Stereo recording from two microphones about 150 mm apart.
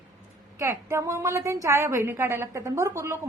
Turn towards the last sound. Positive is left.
turn(degrees=-20)  # may be behind; listen again after turning